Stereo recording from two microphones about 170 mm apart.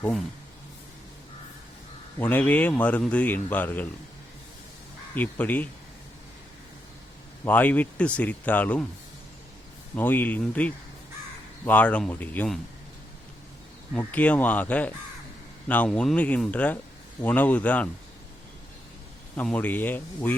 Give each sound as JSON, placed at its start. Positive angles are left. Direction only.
{"t": 0.0, "sound": "speech", "side_deg": 5}
{"t": 2.1, "sound": "a man's voice", "side_deg": 10}
{"t": 5.1, "sound": "a man's voice", "side_deg": 10}
{"t": 7.4, "sound": "a man's voice", "side_deg": 10}
{"t": 9.9, "sound": "a man's voice", "side_deg": 10}
{"t": 13.9, "sound": "a man's voice", "side_deg": 10}
{"t": 19.4, "sound": "a man's voice", "side_deg": 10}